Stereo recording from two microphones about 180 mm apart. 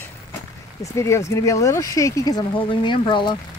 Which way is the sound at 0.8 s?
15° left (ahead or behind).